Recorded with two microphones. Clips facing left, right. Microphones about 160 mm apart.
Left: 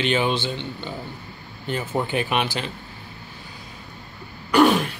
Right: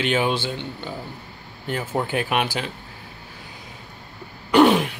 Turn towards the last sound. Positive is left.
turn(degrees=-20)  # may be behind; listen again after turning